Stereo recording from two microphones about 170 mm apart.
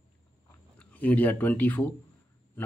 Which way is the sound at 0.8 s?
10° left (ahead or behind).